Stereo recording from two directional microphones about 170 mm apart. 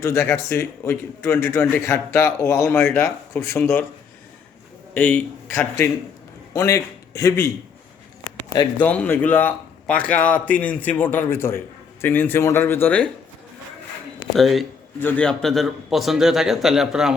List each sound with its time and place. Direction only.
0.0 s speech: 15° left (ahead or behind)
4.9 s a man's voice: 10° left (ahead or behind)
8.8 s speech: 10° left (ahead or behind)
14.3 s a man's voice: centre (ahead or behind)